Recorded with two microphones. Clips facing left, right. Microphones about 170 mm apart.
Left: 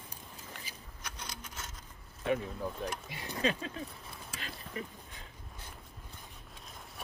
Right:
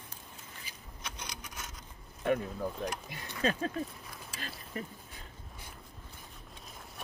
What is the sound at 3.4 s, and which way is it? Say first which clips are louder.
Speech: right 2 dB; 45° right (ahead or behind).